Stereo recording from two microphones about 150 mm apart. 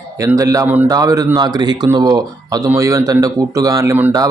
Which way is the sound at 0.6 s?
10° right (ahead or behind).